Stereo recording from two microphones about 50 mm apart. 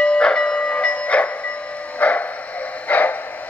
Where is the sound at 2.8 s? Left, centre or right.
Left.